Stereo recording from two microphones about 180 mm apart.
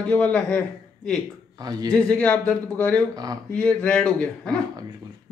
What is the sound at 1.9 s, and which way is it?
A man's voice, 5° left (ahead or behind).